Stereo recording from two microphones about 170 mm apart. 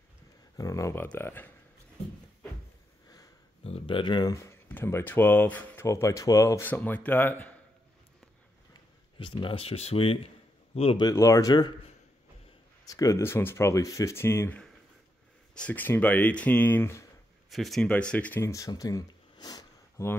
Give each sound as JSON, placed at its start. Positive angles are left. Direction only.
{"t": 0.6, "sound": "speech", "side_deg": 20}
{"t": 3.6, "sound": "speech", "side_deg": 35}
{"t": 9.2, "sound": "a man's voice", "side_deg": 30}
{"t": 17.5, "sound": "speech", "side_deg": 0}